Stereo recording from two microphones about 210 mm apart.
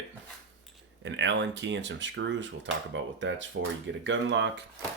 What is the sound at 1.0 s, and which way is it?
Speech, 60° right (ahead or behind).